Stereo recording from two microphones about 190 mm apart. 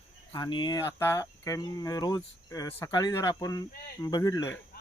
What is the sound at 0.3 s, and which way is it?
Speech, 25° left (ahead or behind).